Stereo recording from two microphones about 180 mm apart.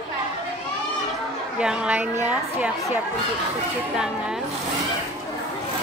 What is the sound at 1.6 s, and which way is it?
A woman's voice, 5° right (ahead or behind).